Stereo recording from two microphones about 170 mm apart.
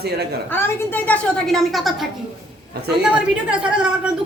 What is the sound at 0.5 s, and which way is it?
A child's voice, 10° left (ahead or behind).